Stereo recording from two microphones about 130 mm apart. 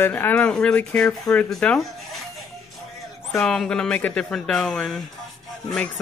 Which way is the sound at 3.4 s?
5° left (ahead or behind).